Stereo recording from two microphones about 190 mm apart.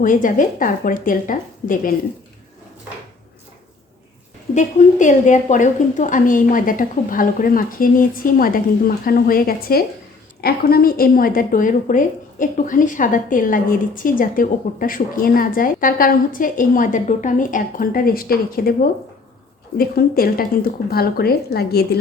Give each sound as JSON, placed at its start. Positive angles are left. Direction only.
{"t": 0.0, "sound": "a woman's voice", "side_deg": 45}
{"t": 4.5, "sound": "a woman's voice", "side_deg": 40}